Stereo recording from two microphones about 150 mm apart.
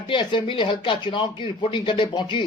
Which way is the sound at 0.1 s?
30° left (ahead or behind).